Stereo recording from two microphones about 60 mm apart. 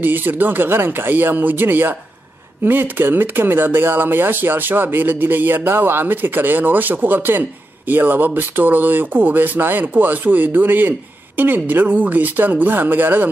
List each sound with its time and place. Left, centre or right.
0.0 s speech: right